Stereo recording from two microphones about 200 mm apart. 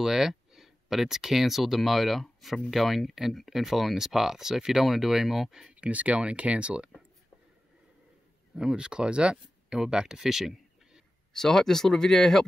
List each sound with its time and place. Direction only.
0.0 s speech: centre (ahead or behind)
8.5 s speech: 5° right (ahead or behind)